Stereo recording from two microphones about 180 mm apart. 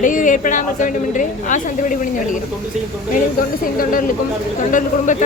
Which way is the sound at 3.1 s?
50° left (ahead or behind).